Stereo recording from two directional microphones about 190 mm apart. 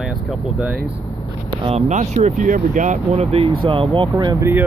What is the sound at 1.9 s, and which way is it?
Speech, 40° right (ahead or behind).